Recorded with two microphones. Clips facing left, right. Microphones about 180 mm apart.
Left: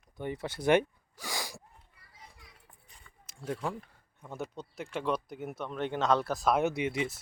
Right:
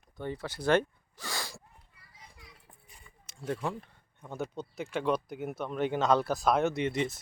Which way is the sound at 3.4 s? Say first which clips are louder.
Right 1 dB; centre (ahead or behind).